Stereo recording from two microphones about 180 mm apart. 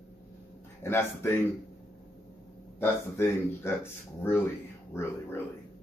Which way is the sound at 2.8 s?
15° left (ahead or behind).